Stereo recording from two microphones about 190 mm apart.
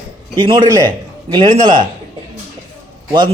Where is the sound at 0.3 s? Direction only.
25° right (ahead or behind).